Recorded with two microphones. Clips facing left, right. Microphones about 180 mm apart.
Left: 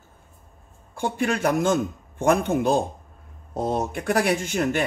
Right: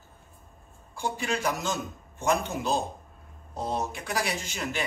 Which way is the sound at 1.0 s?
55° left (ahead or behind).